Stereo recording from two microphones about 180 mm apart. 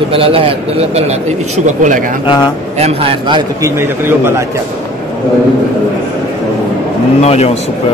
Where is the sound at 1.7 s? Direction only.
45° right (ahead or behind).